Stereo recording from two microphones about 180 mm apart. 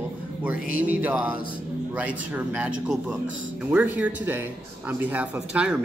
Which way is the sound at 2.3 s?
5° right (ahead or behind).